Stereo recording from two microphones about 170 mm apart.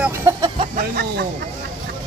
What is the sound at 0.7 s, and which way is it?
Speech, 60° right (ahead or behind).